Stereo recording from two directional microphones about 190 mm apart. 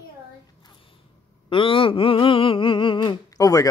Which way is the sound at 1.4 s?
25° left (ahead or behind).